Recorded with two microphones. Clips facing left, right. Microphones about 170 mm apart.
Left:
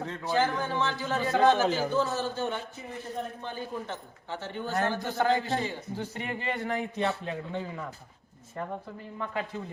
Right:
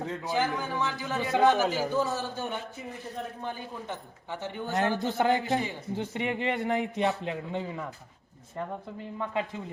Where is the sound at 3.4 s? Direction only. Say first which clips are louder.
Left 1 dB; 15° right (ahead or behind).